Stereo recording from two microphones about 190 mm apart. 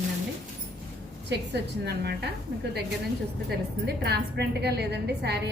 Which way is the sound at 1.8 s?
60° right (ahead or behind).